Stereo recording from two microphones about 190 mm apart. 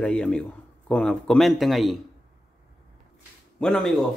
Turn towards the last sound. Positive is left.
turn(degrees=0)  # may be behind; listen again after turning